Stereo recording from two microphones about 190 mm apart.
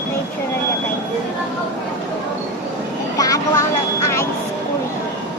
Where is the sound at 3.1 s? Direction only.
20° left (ahead or behind).